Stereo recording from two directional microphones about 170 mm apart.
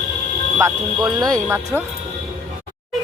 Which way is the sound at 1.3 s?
15° right (ahead or behind).